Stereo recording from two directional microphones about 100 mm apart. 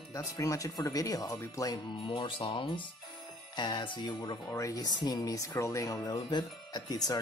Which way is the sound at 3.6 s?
50° left (ahead or behind).